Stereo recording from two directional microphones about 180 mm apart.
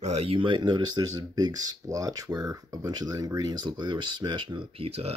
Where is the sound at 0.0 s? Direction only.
35° right (ahead or behind).